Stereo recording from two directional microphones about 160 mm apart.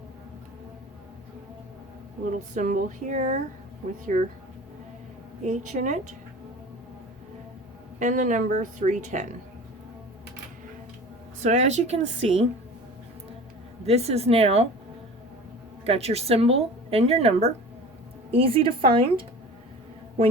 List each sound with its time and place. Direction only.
2.3 s speech: 55° right (ahead or behind)
5.4 s speech: 50° right (ahead or behind)
7.9 s speech: 50° right (ahead or behind)
11.3 s speech: 45° right (ahead or behind)
13.8 s a woman's voice: 40° right (ahead or behind)
15.9 s a woman's voice: 40° right (ahead or behind)